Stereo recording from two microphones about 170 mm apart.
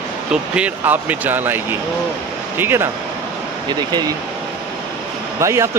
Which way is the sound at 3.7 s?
25° right (ahead or behind).